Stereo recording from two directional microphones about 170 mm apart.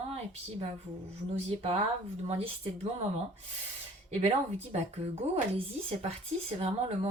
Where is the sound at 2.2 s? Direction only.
40° right (ahead or behind).